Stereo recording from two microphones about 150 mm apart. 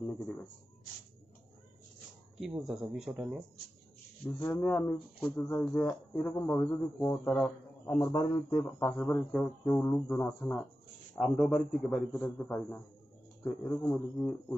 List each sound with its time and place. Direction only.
0.0 s speech: 10° left (ahead or behind)
2.4 s speech: centre (ahead or behind)
4.4 s a man's voice: 10° left (ahead or behind)
8.1 s a man's voice: 45° left (ahead or behind)
8.6 s a man's voice: 15° left (ahead or behind)
8.9 s a man's voice: 5° left (ahead or behind)
11.1 s a man's voice: centre (ahead or behind)